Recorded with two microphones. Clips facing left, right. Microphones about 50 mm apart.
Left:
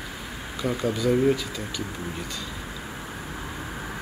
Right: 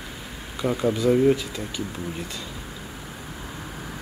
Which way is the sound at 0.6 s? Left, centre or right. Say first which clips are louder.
Right 3 dB; centre.